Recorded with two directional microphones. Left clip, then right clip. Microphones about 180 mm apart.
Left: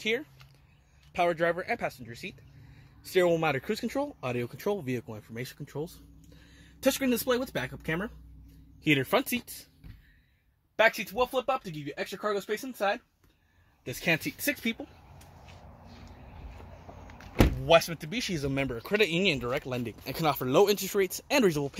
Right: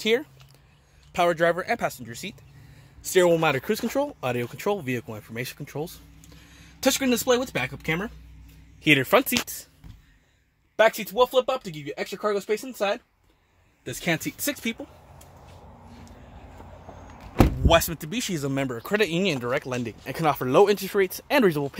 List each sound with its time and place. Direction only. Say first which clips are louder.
0.0 s speech: right 7 dB; 35° right (ahead or behind)
1.1 s speech: right 5 dB; 20° right (ahead or behind)
6.8 s speech: right 4 dB; 40° right (ahead or behind)
8.8 s speech: right 7 dB; 20° right (ahead or behind)
10.8 s speech: right 5 dB; 20° left (ahead or behind)
11.4 s speech: right 3 dB; 40° left (ahead or behind)
13.8 s speech: right 2 dB; 15° left (ahead or behind)
17.6 s speech: even; 5° right (ahead or behind)